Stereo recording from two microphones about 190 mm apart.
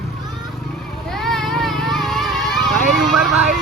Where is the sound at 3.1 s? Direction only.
5° right (ahead or behind).